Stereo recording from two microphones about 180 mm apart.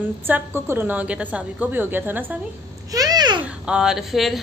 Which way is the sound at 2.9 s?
20° right (ahead or behind).